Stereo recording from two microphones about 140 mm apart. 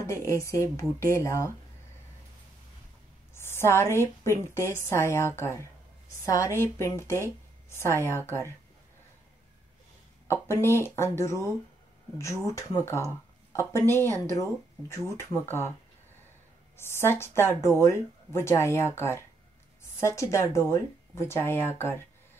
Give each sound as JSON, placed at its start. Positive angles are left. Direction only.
{"t": 0.0, "sound": "speech", "side_deg": 20}
{"t": 3.3, "sound": "a woman's voice", "side_deg": 20}
{"t": 10.2, "sound": "speech", "side_deg": 15}
{"t": 14.0, "sound": "speech", "side_deg": -25}
{"t": 14.3, "sound": "speech", "side_deg": 20}
{"t": 16.7, "sound": "speech", "side_deg": 20}